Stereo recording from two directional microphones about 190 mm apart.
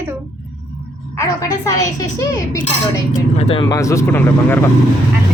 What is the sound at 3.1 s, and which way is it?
Speech, 30° left (ahead or behind).